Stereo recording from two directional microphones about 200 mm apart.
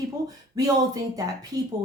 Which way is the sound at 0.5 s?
20° right (ahead or behind).